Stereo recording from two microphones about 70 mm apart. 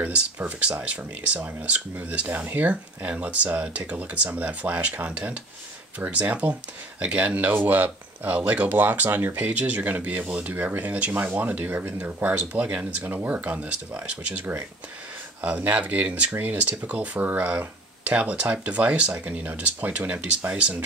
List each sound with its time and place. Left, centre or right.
0.0 s speech: right